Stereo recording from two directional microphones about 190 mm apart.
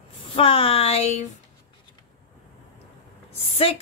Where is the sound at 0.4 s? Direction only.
30° left (ahead or behind).